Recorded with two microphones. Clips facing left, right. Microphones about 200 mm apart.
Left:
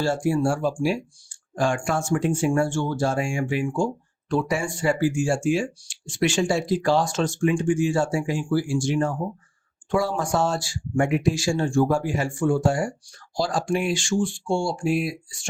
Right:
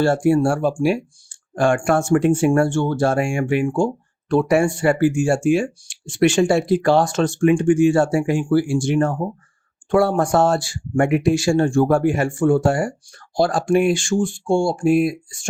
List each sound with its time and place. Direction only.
0.0 s speech: 60° right (ahead or behind)